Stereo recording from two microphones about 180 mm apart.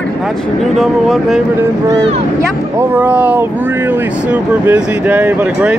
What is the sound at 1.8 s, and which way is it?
Speech, 20° right (ahead or behind).